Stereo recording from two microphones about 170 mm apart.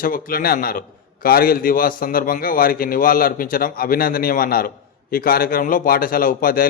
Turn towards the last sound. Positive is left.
turn(degrees=55)  # may be behind; listen again after turning